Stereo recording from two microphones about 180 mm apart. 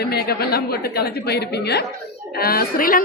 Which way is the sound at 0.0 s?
60° left (ahead or behind).